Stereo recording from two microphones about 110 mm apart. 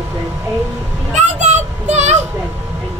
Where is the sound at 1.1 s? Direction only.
90° right.